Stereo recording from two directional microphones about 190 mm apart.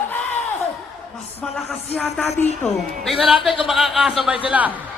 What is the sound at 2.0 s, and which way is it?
Music, 5° left (ahead or behind).